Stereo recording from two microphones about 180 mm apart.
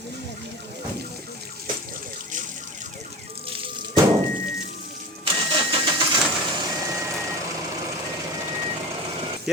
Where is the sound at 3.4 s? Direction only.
30° right (ahead or behind).